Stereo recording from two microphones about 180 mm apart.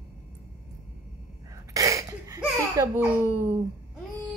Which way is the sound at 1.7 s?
20° right (ahead or behind).